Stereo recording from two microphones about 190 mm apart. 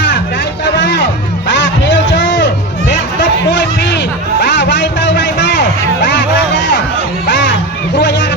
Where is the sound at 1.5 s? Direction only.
70° left (ahead or behind).